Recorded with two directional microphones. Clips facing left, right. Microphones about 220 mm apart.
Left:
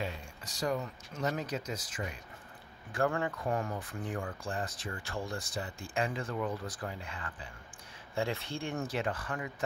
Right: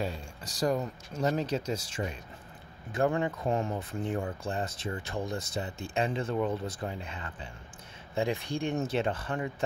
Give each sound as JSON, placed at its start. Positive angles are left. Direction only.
{"t": 0.0, "sound": "speech", "side_deg": -40}